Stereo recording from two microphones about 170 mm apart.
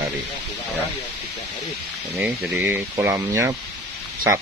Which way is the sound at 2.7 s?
15° right (ahead or behind).